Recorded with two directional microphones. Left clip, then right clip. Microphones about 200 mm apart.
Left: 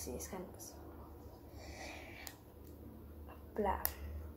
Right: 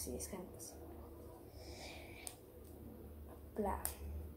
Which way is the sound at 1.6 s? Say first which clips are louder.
Left 4 dB; 10° left (ahead or behind).